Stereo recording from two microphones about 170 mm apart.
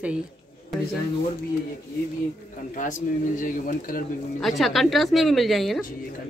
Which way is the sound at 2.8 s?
50° left (ahead or behind).